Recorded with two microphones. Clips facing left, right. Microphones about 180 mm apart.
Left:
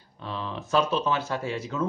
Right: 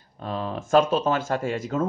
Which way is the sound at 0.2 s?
45° right (ahead or behind).